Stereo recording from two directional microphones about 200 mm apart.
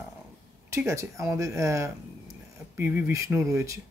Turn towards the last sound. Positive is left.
turn(degrees=-15)  # may be behind; listen again after turning